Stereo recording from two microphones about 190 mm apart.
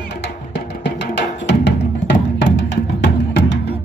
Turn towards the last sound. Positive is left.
turn(degrees=65)  # may be behind; listen again after turning